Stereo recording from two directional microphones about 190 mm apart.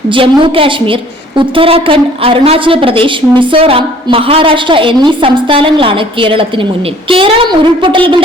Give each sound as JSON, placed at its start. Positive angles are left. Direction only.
{"t": 0.1, "sound": "a woman's voice", "side_deg": -25}